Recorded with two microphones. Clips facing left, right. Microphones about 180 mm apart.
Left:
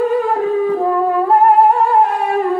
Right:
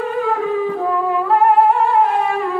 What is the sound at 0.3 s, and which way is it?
Music, 40° left (ahead or behind).